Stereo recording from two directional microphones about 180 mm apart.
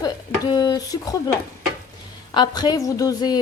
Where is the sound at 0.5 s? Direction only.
20° left (ahead or behind).